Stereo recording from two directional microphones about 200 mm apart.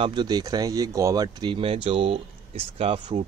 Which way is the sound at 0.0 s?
20° right (ahead or behind).